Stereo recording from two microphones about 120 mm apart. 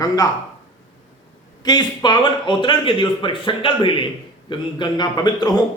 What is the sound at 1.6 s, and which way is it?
A man's voice, 35° left (ahead or behind).